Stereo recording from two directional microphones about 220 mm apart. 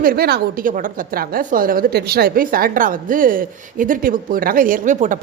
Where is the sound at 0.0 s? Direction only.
45° right (ahead or behind).